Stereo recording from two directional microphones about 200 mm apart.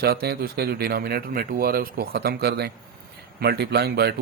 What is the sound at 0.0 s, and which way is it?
Speech, 50° right (ahead or behind).